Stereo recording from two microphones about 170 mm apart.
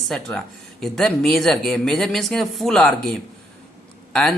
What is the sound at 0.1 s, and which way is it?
Speech, centre (ahead or behind).